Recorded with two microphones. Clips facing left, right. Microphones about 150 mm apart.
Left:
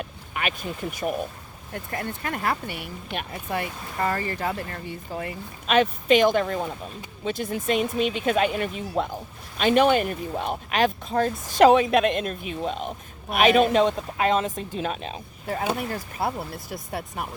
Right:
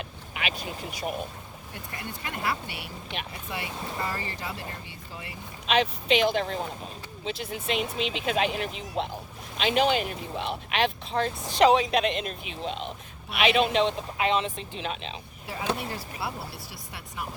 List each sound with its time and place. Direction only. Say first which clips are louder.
0.0 s speech: left 4 dB; 45° left (ahead or behind)